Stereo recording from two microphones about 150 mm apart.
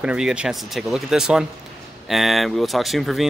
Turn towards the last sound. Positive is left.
turn(degrees=0)  # may be behind; listen again after turning